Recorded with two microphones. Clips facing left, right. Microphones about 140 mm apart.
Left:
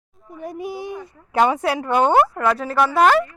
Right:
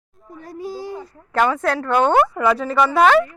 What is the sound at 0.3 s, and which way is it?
Speech, 15° left (ahead or behind).